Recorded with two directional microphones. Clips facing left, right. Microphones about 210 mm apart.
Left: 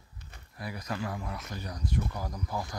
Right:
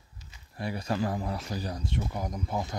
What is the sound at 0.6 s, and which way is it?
Speech, 30° right (ahead or behind).